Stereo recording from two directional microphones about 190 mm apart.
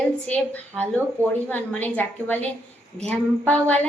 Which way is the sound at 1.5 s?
10° left (ahead or behind).